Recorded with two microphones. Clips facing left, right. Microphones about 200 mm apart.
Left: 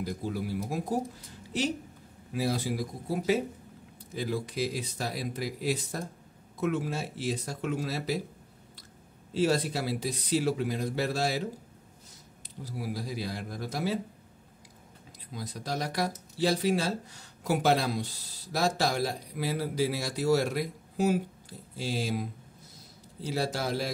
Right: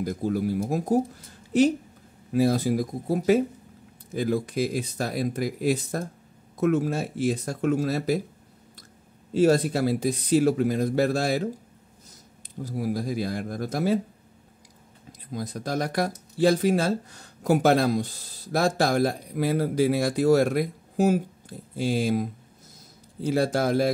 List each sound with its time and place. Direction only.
0.0 s speech: 45° right (ahead or behind)
9.3 s speech: 50° right (ahead or behind)
12.6 s speech: 50° right (ahead or behind)
15.3 s speech: 50° right (ahead or behind)